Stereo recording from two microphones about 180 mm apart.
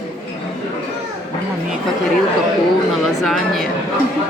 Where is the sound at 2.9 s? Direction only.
Centre (ahead or behind).